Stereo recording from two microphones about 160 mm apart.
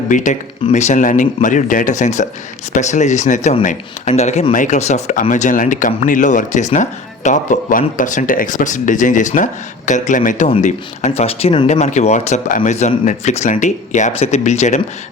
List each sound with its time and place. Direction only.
0.1 s speech: 50° left (ahead or behind)